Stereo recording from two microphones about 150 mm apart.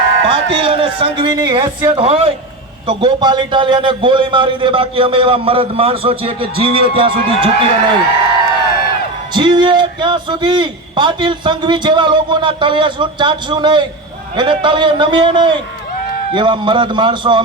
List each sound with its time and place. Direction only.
0.3 s a man's voice: 35° right (ahead or behind)
9.3 s a man's voice: 30° right (ahead or behind)